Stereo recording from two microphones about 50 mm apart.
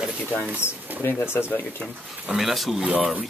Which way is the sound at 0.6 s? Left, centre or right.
Left.